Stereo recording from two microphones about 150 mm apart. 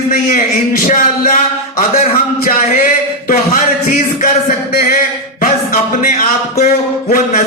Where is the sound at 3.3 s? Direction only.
60° left (ahead or behind).